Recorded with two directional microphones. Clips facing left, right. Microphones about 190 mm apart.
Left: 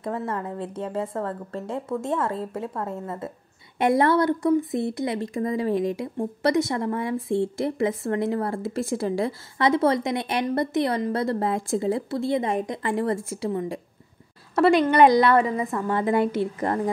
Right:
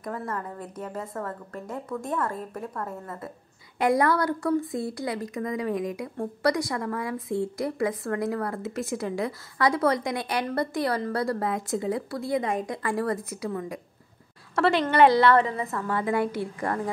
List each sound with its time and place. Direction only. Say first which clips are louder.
0.0 s speech: left 4 dB; 25° left (ahead or behind)
14.5 s a woman's voice: left 5 dB; 15° left (ahead or behind)